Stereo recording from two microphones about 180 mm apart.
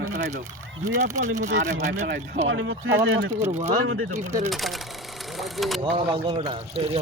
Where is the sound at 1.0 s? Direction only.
40° right (ahead or behind).